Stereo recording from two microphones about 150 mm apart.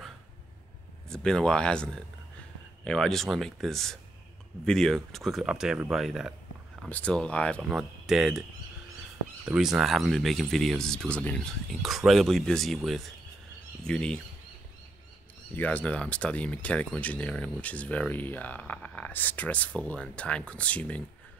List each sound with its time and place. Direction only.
1.0 s speech: 5° left (ahead or behind)
6.9 s speech: 10° left (ahead or behind)
9.5 s speech: 5° right (ahead or behind)
15.5 s speech: 10° left (ahead or behind)